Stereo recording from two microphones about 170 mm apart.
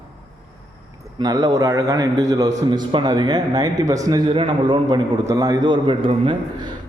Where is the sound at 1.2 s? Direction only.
20° right (ahead or behind).